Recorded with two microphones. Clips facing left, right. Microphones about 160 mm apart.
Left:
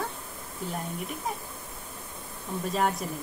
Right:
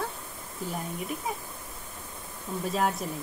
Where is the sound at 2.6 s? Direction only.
Centre (ahead or behind).